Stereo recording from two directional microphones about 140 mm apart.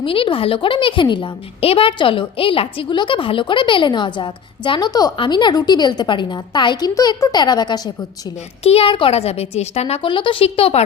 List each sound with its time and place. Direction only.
0.0 s a woman's voice: 40° left (ahead or behind)
8.6 s a woman's voice: 45° left (ahead or behind)